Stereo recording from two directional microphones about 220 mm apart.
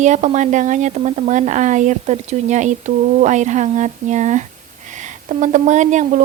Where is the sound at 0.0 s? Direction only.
35° right (ahead or behind).